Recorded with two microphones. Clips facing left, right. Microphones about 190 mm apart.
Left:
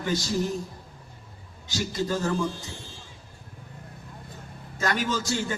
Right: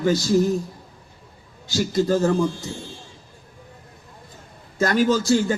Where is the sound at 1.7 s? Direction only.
40° right (ahead or behind).